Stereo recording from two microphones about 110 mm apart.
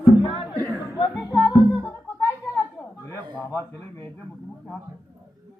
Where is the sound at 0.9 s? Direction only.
35° left (ahead or behind).